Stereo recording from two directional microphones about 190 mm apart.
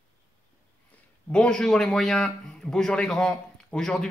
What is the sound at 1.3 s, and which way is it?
A man's voice, 5° left (ahead or behind).